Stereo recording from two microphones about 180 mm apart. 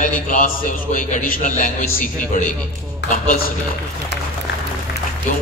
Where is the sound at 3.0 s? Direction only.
75° left (ahead or behind).